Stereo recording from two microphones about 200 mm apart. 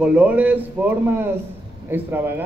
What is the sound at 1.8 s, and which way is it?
Speech, 10° right (ahead or behind).